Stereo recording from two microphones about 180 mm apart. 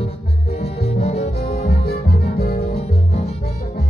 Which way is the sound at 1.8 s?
60° left (ahead or behind).